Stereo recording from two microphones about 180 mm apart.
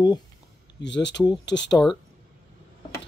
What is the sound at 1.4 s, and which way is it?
Speech, 80° left.